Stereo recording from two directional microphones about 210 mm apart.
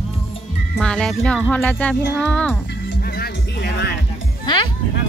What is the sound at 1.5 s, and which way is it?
Speech, 5° left (ahead or behind).